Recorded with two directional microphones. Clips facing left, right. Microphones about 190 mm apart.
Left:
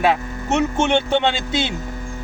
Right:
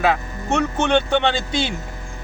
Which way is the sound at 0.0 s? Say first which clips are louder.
Left 1 dB; 25° left (ahead or behind).